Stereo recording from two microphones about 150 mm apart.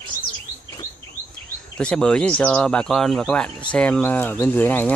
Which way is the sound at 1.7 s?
5° left (ahead or behind).